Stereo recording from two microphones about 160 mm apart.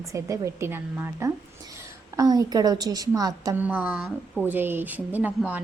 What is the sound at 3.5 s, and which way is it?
Speech, 10° right (ahead or behind).